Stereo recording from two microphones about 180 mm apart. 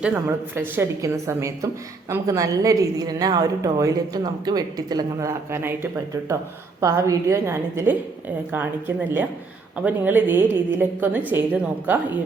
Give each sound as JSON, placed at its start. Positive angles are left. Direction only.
{"t": 0.0, "sound": "a woman's voice", "side_deg": -10}